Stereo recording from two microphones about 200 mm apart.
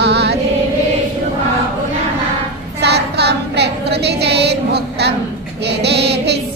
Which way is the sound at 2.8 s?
55° right (ahead or behind).